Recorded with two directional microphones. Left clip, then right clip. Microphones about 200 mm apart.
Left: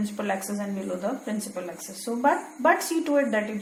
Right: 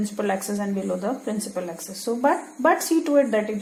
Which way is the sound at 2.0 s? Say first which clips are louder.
Right 2 dB; 50° right (ahead or behind).